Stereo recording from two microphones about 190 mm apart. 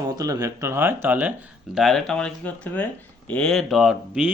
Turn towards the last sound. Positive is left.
turn(degrees=-5)  # may be behind; listen again after turning